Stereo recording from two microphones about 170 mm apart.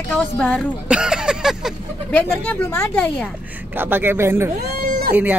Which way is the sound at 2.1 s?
10° left (ahead or behind).